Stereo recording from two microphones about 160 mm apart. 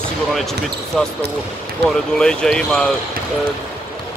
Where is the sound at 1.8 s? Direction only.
90° right.